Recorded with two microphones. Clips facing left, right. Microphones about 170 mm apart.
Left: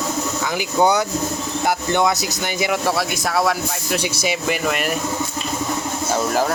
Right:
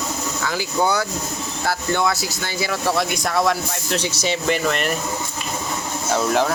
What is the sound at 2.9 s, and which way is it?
Speech, 5° left (ahead or behind).